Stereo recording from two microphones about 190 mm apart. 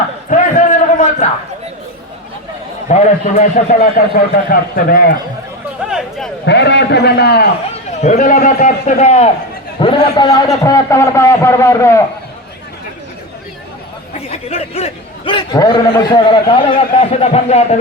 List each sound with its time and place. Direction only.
0.3 s a sound: 40° left (ahead or behind)
2.9 s a man's voice: 40° left (ahead or behind)
5.9 s a sound: centre (ahead or behind)
6.4 s a man's voice: 65° left (ahead or behind)
7.9 s a man's voice: 35° left (ahead or behind)
9.8 s a man's voice: 25° left (ahead or behind)
14.1 s a man's voice: 30° left (ahead or behind)